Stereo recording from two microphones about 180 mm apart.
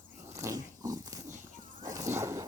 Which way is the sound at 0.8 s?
20° right (ahead or behind).